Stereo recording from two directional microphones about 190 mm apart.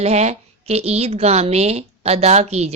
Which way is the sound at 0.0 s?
35° right (ahead or behind).